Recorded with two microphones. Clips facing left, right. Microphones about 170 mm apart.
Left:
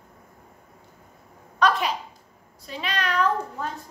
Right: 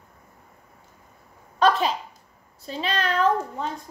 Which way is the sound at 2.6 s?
30° right (ahead or behind).